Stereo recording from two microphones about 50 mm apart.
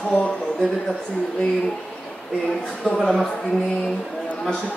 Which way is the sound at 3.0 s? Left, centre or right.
Centre.